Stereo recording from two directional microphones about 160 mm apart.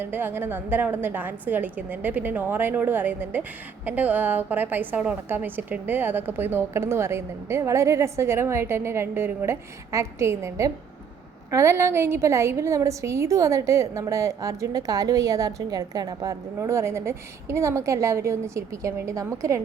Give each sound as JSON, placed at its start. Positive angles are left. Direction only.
{"t": 0.0, "sound": "a woman's voice", "side_deg": -10}